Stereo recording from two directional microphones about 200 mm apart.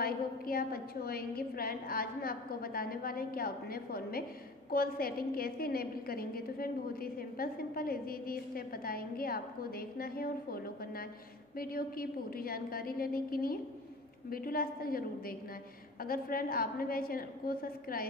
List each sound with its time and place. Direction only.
0.0 s a woman's voice: 45° left (ahead or behind)